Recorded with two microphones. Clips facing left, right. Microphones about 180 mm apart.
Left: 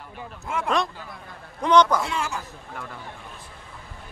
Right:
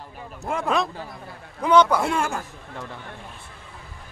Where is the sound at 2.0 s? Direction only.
50° right (ahead or behind).